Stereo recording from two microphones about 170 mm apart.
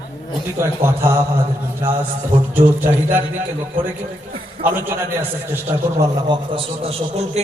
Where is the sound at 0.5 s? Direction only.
15° right (ahead or behind).